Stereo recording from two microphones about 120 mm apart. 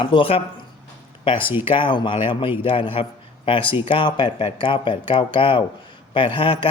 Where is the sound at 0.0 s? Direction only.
45° left (ahead or behind).